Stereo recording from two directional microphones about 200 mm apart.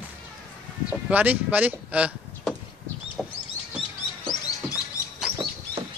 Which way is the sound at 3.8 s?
20° left (ahead or behind).